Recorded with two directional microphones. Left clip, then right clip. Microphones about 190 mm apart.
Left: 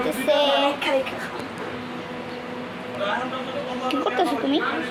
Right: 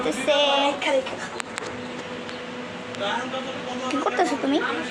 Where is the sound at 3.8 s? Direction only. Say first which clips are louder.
Even; 5° right (ahead or behind).